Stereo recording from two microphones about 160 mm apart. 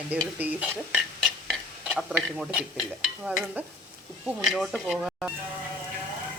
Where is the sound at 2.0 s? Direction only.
5° right (ahead or behind).